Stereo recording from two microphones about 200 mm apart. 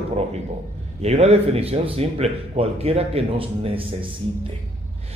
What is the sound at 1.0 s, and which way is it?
A man's voice, 30° right (ahead or behind).